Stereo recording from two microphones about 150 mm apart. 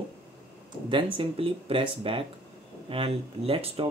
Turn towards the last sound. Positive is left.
turn(degrees=-40)  # may be behind; listen again after turning